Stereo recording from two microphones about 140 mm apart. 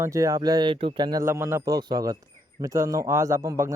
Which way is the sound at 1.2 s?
20° right (ahead or behind).